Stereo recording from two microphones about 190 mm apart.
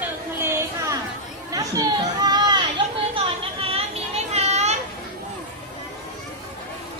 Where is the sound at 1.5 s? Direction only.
20° right (ahead or behind).